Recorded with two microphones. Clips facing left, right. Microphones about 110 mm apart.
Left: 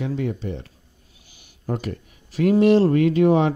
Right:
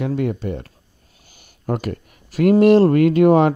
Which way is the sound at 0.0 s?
60° right (ahead or behind).